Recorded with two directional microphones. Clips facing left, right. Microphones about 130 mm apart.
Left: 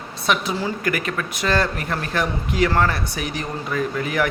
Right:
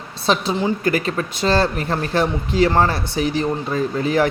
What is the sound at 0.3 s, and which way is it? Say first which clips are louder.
A woman's voice: right 4 dB; 25° right (ahead or behind).